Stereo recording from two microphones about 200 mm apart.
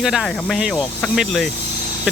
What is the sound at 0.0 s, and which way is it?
Speech, centre (ahead or behind).